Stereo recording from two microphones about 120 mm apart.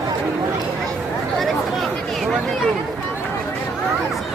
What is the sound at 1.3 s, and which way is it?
Chatter, centre (ahead or behind).